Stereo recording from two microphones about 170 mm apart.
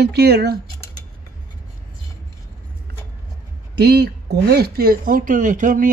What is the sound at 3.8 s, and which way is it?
Speech, 70° right (ahead or behind).